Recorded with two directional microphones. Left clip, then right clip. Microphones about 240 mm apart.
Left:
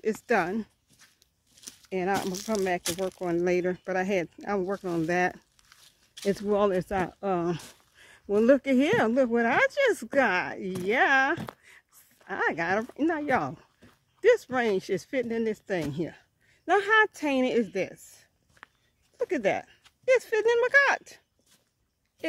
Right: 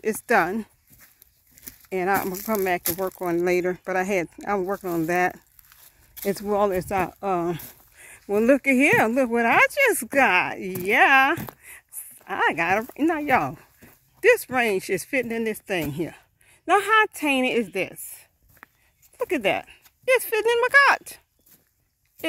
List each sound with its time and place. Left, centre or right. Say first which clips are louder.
0.0 s speech: right 5 dB; centre
1.9 s speech: right 5 dB; centre
3.2 s speech: right 4 dB; centre
5.7 s a sound: right 1 dB; right
6.2 s speech: right 3 dB; centre
18.6 s dog: right 2 dB; right
19.1 s speech: right 4 dB; centre